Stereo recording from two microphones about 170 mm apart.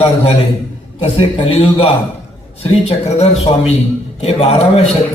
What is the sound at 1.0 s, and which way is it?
A man's voice, 35° left (ahead or behind).